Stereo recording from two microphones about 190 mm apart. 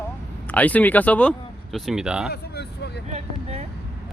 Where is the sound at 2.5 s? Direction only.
60° left (ahead or behind).